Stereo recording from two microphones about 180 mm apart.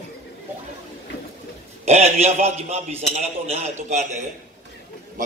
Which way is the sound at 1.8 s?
35° right (ahead or behind).